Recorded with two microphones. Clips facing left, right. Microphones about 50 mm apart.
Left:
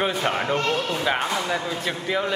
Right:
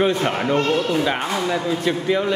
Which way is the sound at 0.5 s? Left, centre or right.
Right.